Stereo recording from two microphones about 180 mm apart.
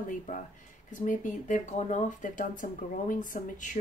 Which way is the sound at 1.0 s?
45° left (ahead or behind).